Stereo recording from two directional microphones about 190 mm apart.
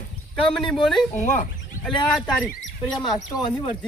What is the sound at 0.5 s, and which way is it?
Speech, centre (ahead or behind).